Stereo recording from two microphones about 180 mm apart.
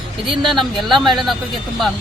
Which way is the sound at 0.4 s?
Centre (ahead or behind).